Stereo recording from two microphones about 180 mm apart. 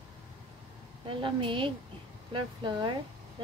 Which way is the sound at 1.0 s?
30° right (ahead or behind).